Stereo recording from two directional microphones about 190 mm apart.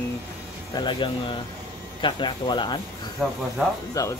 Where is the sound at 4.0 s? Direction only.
20° left (ahead or behind).